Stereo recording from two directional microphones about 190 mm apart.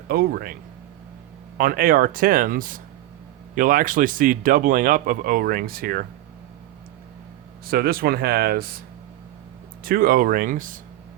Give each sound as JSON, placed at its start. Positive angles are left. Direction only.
{"t": 0.1, "sound": "speech", "side_deg": -50}
{"t": 1.5, "sound": "speech", "side_deg": -50}
{"t": 7.7, "sound": "speech", "side_deg": -50}
{"t": 9.8, "sound": "speech", "side_deg": -50}